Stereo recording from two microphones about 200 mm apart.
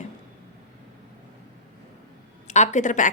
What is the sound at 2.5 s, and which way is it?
Speech, 35° left (ahead or behind).